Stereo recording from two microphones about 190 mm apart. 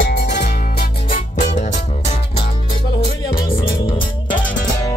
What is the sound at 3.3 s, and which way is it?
Music, 50° left (ahead or behind).